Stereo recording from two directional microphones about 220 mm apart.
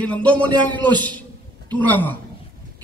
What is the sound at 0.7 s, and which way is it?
Speech, 20° right (ahead or behind).